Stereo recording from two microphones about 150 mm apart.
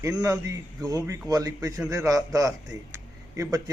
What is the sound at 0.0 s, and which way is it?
A man's voice, 25° right (ahead or behind).